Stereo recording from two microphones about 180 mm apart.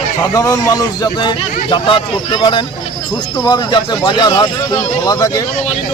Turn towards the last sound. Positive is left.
turn(degrees=20)  # may be behind; listen again after turning